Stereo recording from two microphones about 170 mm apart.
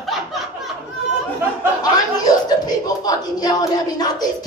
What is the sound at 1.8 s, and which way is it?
Speech, 20° left (ahead or behind).